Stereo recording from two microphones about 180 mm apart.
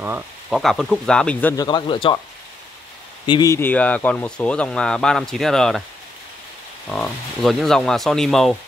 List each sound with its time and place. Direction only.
0.0 s speech: 10° right (ahead or behind)
0.6 s speech: centre (ahead or behind)
1.6 s speech: 25° left (ahead or behind)
3.3 s speech: 20° left (ahead or behind); by 5.9 s centre (ahead or behind)
6.9 s speech: 5° left (ahead or behind)